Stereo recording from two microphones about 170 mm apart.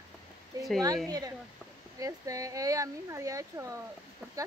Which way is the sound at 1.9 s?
20° right (ahead or behind).